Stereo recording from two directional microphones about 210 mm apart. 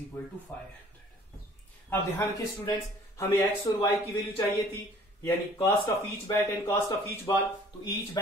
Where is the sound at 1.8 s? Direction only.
10° left (ahead or behind).